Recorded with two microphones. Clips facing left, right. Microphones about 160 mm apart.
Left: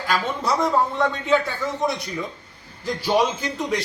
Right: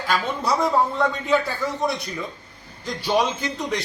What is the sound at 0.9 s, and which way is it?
Speech, 5° right (ahead or behind).